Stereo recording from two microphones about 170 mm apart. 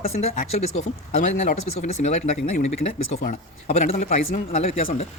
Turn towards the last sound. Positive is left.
turn(degrees=40)  # may be behind; listen again after turning